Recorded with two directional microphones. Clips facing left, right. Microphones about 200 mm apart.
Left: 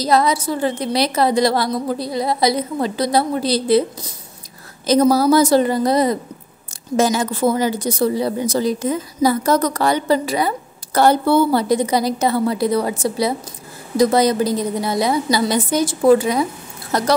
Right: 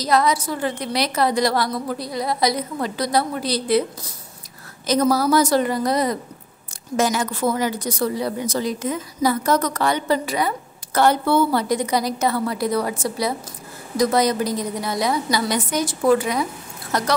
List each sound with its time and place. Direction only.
0.0 s speech: 30° left (ahead or behind)
4.8 s speech: 30° left (ahead or behind)